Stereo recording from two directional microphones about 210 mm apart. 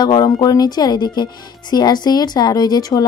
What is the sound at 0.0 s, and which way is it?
Speech, 20° left (ahead or behind).